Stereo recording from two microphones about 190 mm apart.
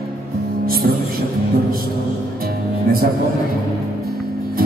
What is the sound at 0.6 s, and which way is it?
Music, 50° right (ahead or behind).